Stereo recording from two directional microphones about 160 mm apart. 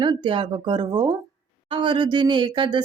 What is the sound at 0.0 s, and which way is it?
Speech, 30° right (ahead or behind).